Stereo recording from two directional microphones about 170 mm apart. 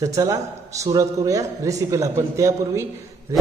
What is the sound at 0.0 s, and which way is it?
A man's voice, 20° right (ahead or behind).